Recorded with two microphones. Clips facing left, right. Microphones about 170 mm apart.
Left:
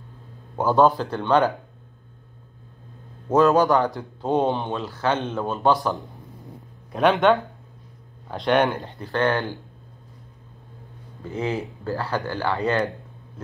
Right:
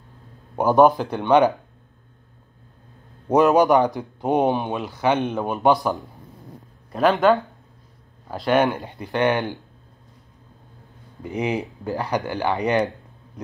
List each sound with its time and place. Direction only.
0.6 s a man's voice: 15° right (ahead or behind)
3.3 s a man's voice: 15° right (ahead or behind)
6.9 s speech: centre (ahead or behind)
8.8 s a man's voice: 15° right (ahead or behind)
11.2 s a man's voice: 15° right (ahead or behind)